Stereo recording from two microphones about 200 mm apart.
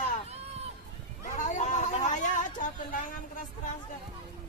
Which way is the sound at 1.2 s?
35° left (ahead or behind).